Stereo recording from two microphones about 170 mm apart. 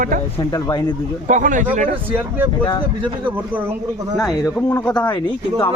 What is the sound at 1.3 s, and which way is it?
Speech, 50° right (ahead or behind).